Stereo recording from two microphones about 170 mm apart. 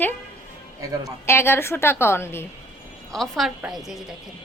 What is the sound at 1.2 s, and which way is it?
A woman's voice, 15° left (ahead or behind).